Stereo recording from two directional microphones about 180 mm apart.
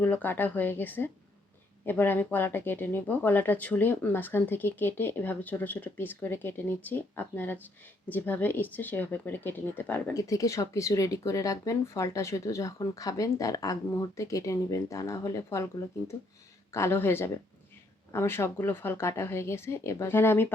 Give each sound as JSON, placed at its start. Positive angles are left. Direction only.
{"t": 0.0, "sound": "speech", "side_deg": 10}